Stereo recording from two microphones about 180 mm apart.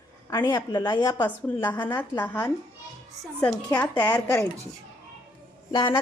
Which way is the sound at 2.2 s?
10° left (ahead or behind).